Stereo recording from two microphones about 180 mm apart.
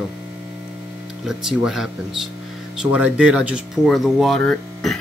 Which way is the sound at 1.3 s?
Centre (ahead or behind).